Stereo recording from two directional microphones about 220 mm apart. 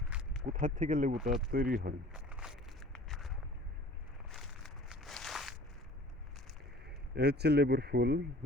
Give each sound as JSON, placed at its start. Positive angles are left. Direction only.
{"t": 0.0, "sound": "a sound", "side_deg": -5}
{"t": 0.4, "sound": "speech", "side_deg": -35}
{"t": 1.1, "sound": "speech", "side_deg": 0}
{"t": 1.5, "sound": "speech", "side_deg": -40}
{"t": 2.1, "sound": "walk", "side_deg": -5}
{"t": 7.2, "sound": "speech", "side_deg": -45}